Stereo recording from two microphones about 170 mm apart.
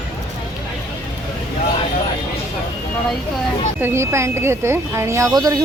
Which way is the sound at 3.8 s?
15° right (ahead or behind).